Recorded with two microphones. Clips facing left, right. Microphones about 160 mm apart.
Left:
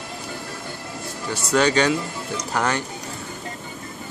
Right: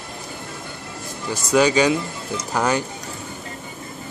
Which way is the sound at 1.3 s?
10° right (ahead or behind).